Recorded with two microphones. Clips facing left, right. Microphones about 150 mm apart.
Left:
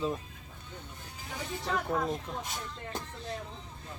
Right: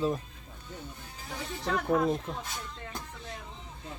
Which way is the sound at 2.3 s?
5° right (ahead or behind).